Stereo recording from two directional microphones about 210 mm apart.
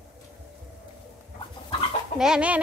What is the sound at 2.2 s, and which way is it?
Speech, 5° right (ahead or behind).